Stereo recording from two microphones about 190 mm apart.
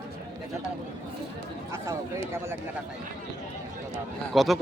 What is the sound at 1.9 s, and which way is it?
Speech, 15° right (ahead or behind).